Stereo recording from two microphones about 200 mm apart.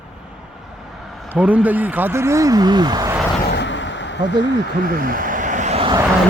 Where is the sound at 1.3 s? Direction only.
5° right (ahead or behind).